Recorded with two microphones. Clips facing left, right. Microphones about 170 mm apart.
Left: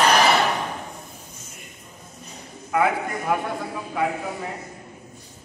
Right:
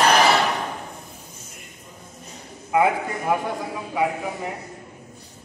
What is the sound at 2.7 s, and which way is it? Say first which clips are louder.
Speech: right 2 dB; 20° right (ahead or behind).